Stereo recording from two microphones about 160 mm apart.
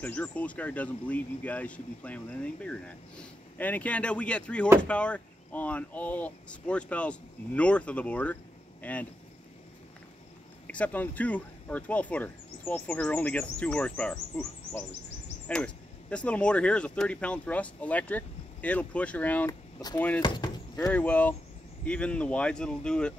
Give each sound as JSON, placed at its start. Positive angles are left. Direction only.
{"t": 0.0, "sound": "speech", "side_deg": 10}
{"t": 10.7, "sound": "speech", "side_deg": 10}
{"t": 20.2, "sound": "speech", "side_deg": 25}
{"t": 20.9, "sound": "speech", "side_deg": 10}